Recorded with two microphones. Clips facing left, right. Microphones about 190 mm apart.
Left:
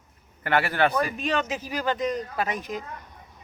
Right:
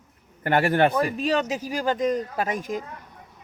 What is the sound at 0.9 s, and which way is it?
Speech, 35° right (ahead or behind).